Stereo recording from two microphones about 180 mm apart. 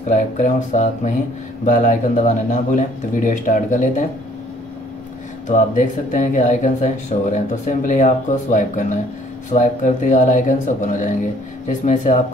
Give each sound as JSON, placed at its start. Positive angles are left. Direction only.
{"t": 0.1, "sound": "speech", "side_deg": 40}
{"t": 5.5, "sound": "speech", "side_deg": 45}